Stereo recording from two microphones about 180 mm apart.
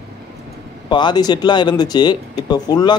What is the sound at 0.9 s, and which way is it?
Speech, 25° left (ahead or behind).